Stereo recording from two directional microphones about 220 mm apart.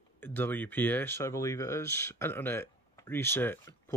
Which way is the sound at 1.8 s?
45° right (ahead or behind).